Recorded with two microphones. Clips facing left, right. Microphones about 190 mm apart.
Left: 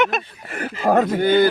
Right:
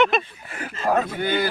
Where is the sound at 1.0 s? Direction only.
40° left (ahead or behind).